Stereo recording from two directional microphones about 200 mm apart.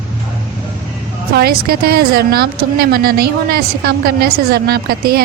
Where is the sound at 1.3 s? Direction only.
50° right (ahead or behind).